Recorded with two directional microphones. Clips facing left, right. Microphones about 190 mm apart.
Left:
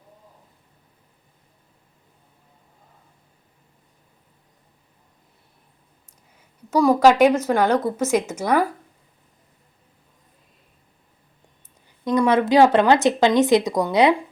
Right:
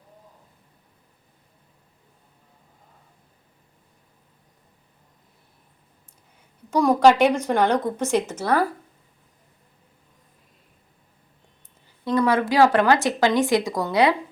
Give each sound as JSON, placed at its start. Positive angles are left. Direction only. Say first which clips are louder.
{"t": 6.7, "sound": "a woman's voice", "louder": "left 1 dB", "side_deg": 5}
{"t": 12.0, "sound": "speech", "louder": "left 2 dB", "side_deg": 20}